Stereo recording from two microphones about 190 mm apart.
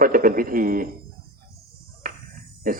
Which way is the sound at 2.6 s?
50° right (ahead or behind).